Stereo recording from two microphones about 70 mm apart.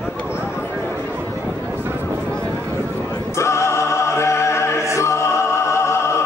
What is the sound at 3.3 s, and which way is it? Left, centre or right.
Music, left.